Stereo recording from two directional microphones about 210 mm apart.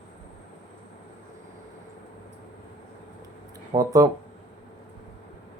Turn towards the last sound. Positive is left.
turn(degrees=-15)  # may be behind; listen again after turning